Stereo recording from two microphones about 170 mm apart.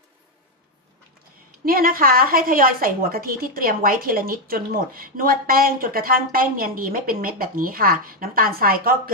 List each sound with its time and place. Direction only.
1.6 s a woman's voice: 60° right (ahead or behind)